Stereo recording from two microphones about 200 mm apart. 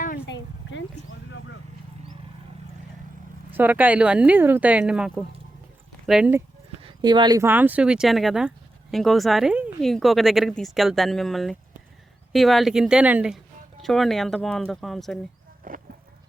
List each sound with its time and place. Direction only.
0.3 s a sound: 65° left (ahead or behind)
3.5 s speech: 10° right (ahead or behind)
6.8 s speech: 20° right (ahead or behind); by 15.2 s centre (ahead or behind)
15.7 s insect: 45° right (ahead or behind)